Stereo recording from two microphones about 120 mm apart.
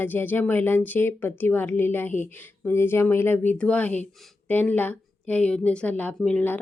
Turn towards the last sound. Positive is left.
turn(degrees=15)  # may be behind; listen again after turning